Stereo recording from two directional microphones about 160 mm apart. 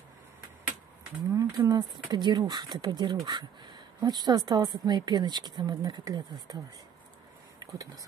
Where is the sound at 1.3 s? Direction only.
20° right (ahead or behind).